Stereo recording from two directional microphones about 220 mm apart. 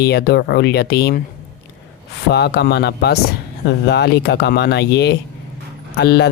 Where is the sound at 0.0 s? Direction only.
45° left (ahead or behind).